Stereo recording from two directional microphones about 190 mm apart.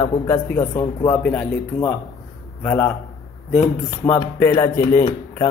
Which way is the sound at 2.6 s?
10° left (ahead or behind).